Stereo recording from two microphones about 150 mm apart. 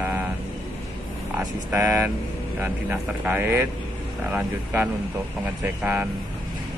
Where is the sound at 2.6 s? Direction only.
10° right (ahead or behind).